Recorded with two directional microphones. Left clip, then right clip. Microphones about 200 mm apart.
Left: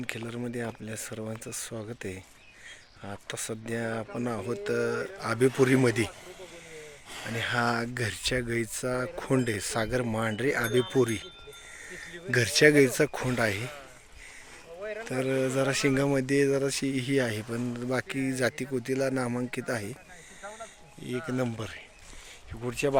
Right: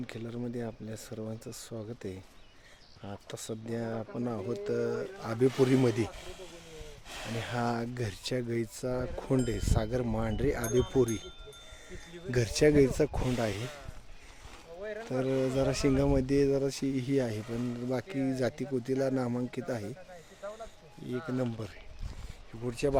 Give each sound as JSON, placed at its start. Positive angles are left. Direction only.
{"t": 0.1, "sound": "speech", "side_deg": 0}
{"t": 7.3, "sound": "speech", "side_deg": 0}
{"t": 12.3, "sound": "speech", "side_deg": 0}
{"t": 14.8, "sound": "a sound", "side_deg": -55}
{"t": 15.0, "sound": "speech", "side_deg": -5}
{"t": 21.0, "sound": "speech", "side_deg": 10}